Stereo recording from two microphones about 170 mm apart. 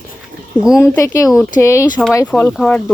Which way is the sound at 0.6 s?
5° right (ahead or behind).